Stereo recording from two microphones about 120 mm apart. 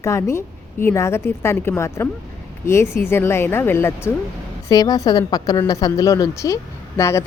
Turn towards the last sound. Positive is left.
turn(degrees=25)  # may be behind; listen again after turning